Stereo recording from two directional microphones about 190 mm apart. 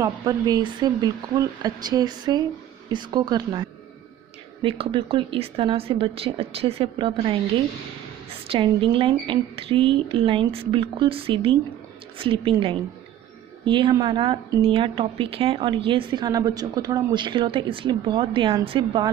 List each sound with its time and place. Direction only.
0.0 s a woman's voice: 20° right (ahead or behind)